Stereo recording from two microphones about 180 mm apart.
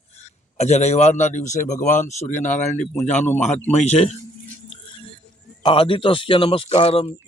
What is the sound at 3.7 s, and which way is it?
Speech, 35° left (ahead or behind).